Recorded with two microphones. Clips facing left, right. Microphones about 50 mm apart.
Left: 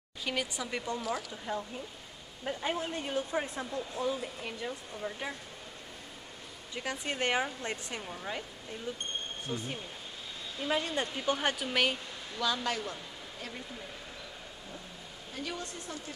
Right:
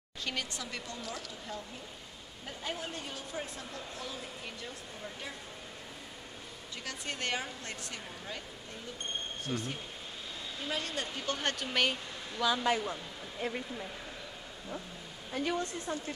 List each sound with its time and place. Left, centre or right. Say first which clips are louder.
0.2 s speech: left 3 dB; centre
6.7 s speech: left 5 dB; centre
9.5 s speech: right 1 dB; centre
10.7 s speech: left 5 dB; centre
12.4 s speech: right 3 dB; centre; by 13.6 s right
15.3 s speech: right 6 dB; right